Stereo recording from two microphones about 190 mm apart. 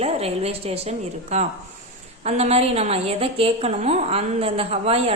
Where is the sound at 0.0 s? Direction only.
30° right (ahead or behind).